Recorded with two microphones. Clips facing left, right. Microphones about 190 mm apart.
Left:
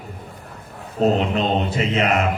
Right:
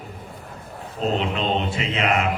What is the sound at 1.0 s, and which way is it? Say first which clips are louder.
Speech: left 5 dB; 40° left (ahead or behind).